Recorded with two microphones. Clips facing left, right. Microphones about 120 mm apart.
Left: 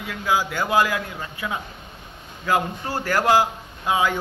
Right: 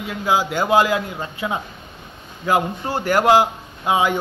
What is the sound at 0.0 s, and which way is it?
A man's voice, 25° right (ahead or behind).